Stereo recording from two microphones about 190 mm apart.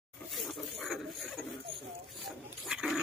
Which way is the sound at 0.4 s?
Centre (ahead or behind).